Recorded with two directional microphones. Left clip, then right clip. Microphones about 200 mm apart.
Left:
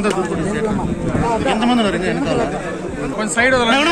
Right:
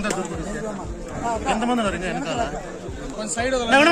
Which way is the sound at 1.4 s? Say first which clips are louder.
Left 3 dB; 35° right (ahead or behind).